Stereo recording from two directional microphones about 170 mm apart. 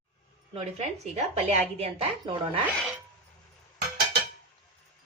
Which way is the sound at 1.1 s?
40° right (ahead or behind).